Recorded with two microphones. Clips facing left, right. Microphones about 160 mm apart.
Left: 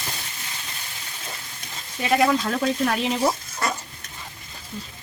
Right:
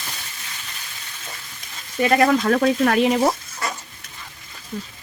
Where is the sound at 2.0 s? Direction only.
55° right (ahead or behind).